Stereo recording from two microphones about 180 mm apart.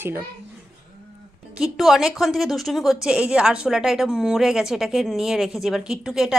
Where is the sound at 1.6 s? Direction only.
Centre (ahead or behind).